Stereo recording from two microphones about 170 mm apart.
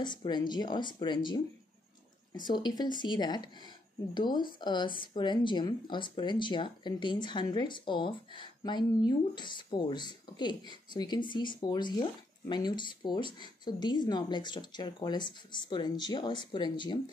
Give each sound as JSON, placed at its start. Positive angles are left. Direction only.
{"t": 0.0, "sound": "speech", "side_deg": 25}
{"t": 2.4, "sound": "speech", "side_deg": 25}